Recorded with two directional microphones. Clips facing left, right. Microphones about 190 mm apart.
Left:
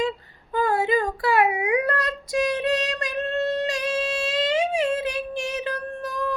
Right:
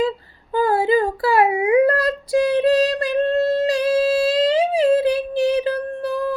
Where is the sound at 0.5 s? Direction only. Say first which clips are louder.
Right 5 dB; 35° right (ahead or behind).